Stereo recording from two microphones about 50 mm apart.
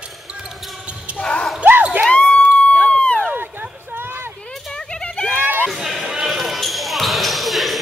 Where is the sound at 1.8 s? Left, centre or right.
Right.